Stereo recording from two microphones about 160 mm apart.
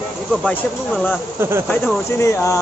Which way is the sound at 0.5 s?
10° left (ahead or behind).